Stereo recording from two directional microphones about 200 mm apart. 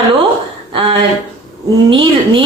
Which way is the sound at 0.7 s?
25° right (ahead or behind).